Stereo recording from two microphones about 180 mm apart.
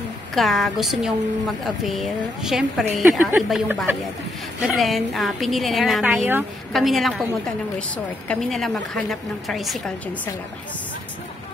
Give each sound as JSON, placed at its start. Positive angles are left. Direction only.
{"t": 0.3, "sound": "a woman's voice", "side_deg": 0}
{"t": 6.1, "sound": "a woman's voice", "side_deg": -10}
{"t": 6.7, "sound": "a woman's voice", "side_deg": 0}